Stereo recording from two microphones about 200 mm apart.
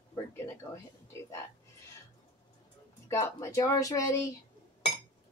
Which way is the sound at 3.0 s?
15° left (ahead or behind).